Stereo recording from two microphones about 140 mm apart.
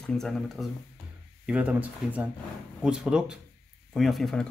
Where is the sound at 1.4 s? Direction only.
10° right (ahead or behind).